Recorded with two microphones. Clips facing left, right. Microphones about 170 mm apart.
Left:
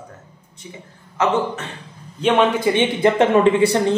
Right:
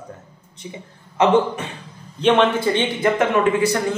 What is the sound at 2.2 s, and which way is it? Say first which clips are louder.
Speech: even; 10° left (ahead or behind).